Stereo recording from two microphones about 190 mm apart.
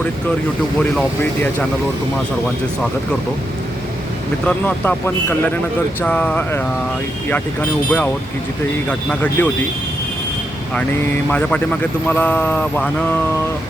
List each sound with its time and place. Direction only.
0.8 s speech: 5° left (ahead or behind)
4.4 s speech: 10° left (ahead or behind)
11.3 s speech: 5° left (ahead or behind)